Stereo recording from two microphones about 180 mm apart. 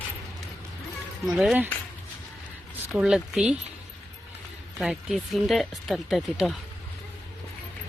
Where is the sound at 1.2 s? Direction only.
Centre (ahead or behind).